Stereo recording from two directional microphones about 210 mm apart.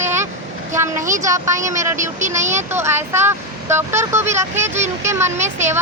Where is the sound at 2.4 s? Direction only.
35° right (ahead or behind).